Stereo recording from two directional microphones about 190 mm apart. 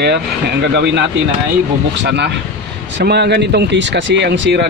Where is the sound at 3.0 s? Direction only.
60° right (ahead or behind).